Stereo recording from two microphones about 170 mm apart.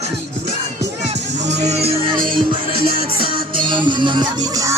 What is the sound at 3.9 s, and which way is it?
Music, 30° right (ahead or behind).